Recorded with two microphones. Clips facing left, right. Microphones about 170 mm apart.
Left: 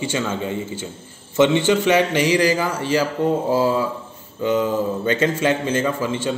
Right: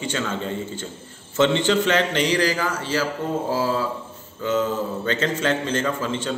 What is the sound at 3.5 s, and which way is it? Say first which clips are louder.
Mantra: left 2 dB; 20° left (ahead or behind).